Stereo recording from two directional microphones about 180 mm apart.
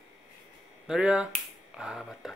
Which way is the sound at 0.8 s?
5° right (ahead or behind).